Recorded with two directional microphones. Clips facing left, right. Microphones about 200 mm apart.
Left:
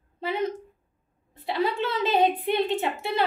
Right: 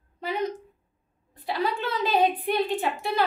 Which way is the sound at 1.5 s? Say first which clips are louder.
Left 2 dB; 25° left (ahead or behind).